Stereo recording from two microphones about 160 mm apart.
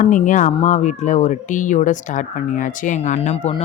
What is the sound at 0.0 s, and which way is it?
Speech, 50° left (ahead or behind).